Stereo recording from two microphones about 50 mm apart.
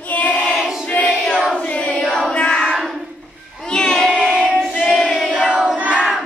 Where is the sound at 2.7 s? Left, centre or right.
Centre.